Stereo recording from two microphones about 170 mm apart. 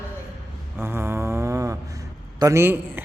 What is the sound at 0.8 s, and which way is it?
Snoring, 15° right (ahead or behind).